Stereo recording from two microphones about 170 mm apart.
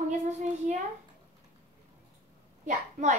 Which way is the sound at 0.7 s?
50° right (ahead or behind).